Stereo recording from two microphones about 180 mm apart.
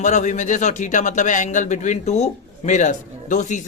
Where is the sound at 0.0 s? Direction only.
40° left (ahead or behind).